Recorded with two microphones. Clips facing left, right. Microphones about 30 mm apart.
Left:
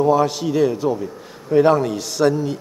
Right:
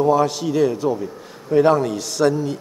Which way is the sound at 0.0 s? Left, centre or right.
Centre.